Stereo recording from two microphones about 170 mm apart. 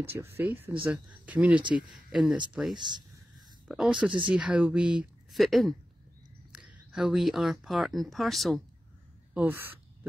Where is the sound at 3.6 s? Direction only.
5° right (ahead or behind).